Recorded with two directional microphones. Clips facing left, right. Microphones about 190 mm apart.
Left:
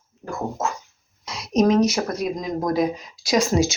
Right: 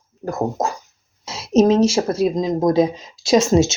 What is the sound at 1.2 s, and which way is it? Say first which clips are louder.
A woman's voice: right 4 dB; 25° right (ahead or behind).